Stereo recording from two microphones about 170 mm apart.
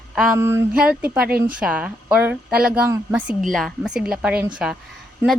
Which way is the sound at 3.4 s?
Centre (ahead or behind).